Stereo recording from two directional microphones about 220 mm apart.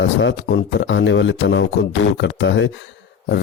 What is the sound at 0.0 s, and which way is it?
Speech, 55° left (ahead or behind).